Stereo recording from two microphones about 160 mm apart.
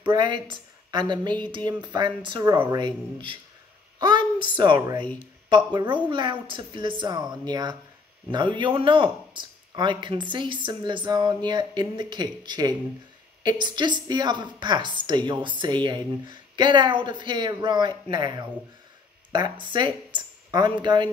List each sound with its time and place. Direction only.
0.0 s a woman's voice: 30° right (ahead or behind)
4.0 s a sound: 30° right (ahead or behind)
4.6 s a man's voice: 30° right (ahead or behind)
19.6 s a woman's voice: 30° right (ahead or behind)